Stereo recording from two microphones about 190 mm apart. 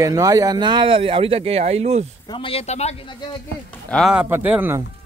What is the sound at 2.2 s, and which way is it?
Speech, 25° left (ahead or behind).